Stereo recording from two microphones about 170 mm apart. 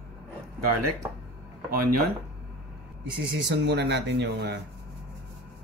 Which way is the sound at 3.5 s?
90° right.